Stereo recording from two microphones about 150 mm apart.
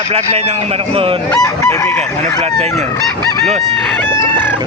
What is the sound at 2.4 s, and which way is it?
Speech, 45° right (ahead or behind).